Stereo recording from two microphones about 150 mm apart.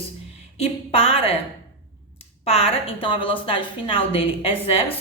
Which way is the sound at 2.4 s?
45° left (ahead or behind).